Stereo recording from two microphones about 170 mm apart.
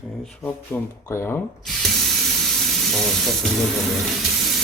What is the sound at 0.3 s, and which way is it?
Speech, 10° left (ahead or behind).